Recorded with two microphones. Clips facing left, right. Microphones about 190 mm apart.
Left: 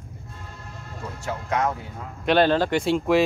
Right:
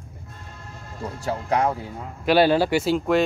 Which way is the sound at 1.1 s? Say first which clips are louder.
Right 3 dB; 35° right (ahead or behind).